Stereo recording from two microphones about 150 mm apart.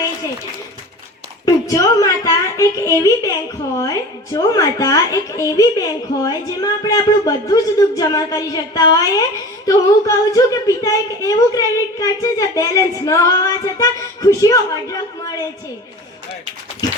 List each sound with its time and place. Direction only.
1.5 s a woman's voice: 20° left (ahead or behind)